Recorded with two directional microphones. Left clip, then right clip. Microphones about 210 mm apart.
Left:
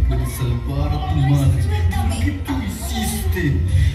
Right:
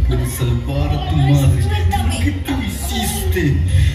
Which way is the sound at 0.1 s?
20° right (ahead or behind).